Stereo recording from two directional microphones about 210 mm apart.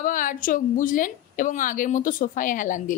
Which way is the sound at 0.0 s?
40° left (ahead or behind).